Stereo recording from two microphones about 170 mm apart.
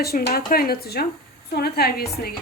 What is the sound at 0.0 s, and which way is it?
A woman's voice, 65° left (ahead or behind).